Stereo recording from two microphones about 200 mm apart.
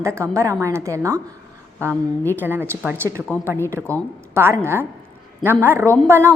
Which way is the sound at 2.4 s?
10° right (ahead or behind).